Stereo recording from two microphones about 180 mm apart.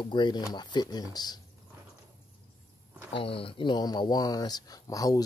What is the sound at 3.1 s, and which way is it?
Speech, 30° left (ahead or behind).